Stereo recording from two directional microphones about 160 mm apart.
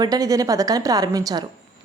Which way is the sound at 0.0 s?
25° right (ahead or behind).